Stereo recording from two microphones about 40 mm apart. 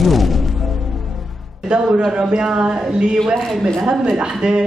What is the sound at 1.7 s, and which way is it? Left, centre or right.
Speech, right.